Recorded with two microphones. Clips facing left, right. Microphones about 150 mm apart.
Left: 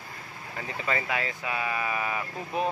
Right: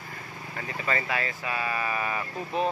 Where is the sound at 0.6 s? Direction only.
15° left (ahead or behind).